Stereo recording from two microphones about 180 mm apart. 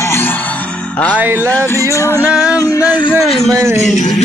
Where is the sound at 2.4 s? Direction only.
20° left (ahead or behind).